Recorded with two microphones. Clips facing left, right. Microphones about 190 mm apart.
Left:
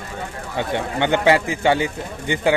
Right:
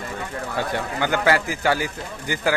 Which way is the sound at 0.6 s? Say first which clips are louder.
Left 4 dB; 25° left (ahead or behind).